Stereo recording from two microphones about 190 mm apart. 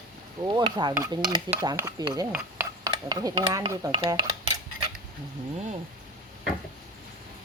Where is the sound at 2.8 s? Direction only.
20° right (ahead or behind).